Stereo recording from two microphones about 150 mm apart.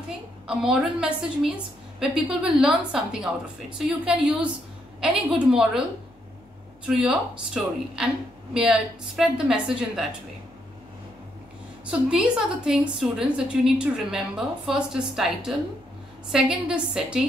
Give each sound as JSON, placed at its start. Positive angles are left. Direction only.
{"t": 0.5, "sound": "a woman's voice", "side_deg": -5}
{"t": 6.9, "sound": "a woman's voice", "side_deg": -5}
{"t": 11.8, "sound": "a woman's voice", "side_deg": -5}